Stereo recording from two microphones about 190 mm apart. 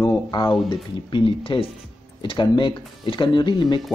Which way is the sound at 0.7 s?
25° left (ahead or behind).